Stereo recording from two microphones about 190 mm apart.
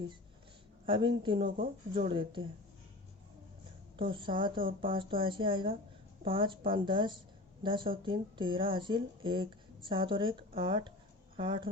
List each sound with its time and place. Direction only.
0.9 s speech: 25° right (ahead or behind)
3.9 s speech: 25° right (ahead or behind)